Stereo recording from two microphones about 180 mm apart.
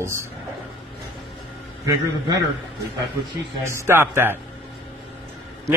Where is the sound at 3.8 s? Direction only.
15° right (ahead or behind).